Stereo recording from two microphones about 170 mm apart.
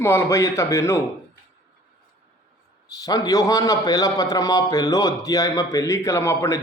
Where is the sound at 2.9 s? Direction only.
20° left (ahead or behind).